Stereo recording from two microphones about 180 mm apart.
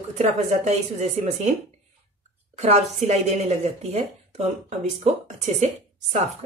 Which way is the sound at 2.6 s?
35° right (ahead or behind).